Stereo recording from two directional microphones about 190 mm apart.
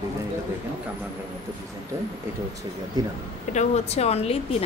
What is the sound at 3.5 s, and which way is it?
Speech, 35° left (ahead or behind).